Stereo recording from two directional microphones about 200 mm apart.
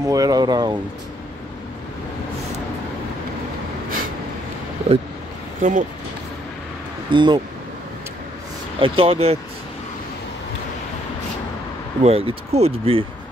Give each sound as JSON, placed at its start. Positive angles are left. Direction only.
{"t": 0.0, "sound": "speech", "side_deg": -15}
{"t": 5.6, "sound": "speech", "side_deg": -40}
{"t": 7.1, "sound": "speech", "side_deg": -25}
{"t": 8.7, "sound": "speech", "side_deg": -25}
{"t": 12.0, "sound": "speech", "side_deg": -30}